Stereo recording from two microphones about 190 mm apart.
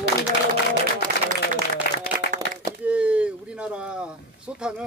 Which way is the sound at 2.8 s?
5° right (ahead or behind).